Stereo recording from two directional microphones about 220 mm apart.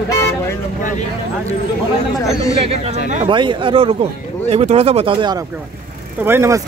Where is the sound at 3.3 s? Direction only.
20° right (ahead or behind).